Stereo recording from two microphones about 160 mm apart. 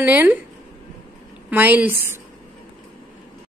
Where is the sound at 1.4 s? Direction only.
10° right (ahead or behind).